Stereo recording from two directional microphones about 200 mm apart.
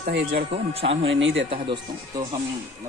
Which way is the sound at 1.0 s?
70° right (ahead or behind).